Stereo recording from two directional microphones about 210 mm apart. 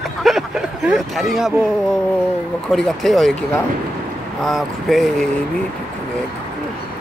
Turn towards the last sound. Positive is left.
turn(degrees=0)  # may be behind; listen again after turning